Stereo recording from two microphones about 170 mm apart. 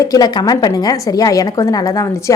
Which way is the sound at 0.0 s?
20° left (ahead or behind).